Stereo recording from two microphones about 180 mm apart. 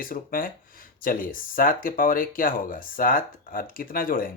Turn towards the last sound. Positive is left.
turn(degrees=50)  # may be behind; listen again after turning